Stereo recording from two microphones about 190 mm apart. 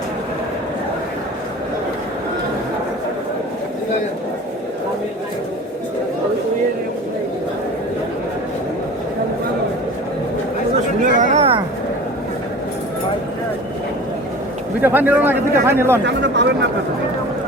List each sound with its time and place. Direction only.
11.0 s a sound: 35° right (ahead or behind)
14.8 s speech: 10° right (ahead or behind)
16.0 s speech: 65° right (ahead or behind)